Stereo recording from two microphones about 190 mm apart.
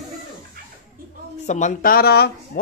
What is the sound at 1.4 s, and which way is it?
Speech, 40° left (ahead or behind).